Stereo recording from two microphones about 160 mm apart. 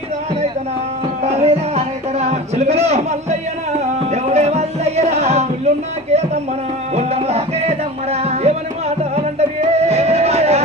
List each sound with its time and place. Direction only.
1.2 s music: 40° right (ahead or behind)
6.9 s music: 40° right (ahead or behind)